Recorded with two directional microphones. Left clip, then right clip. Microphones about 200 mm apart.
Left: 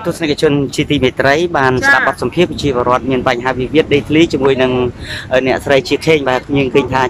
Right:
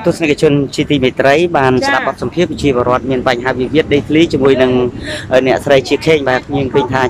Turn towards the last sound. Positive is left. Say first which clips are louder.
# even
turn(degrees=5)  # may be behind; listen again after turning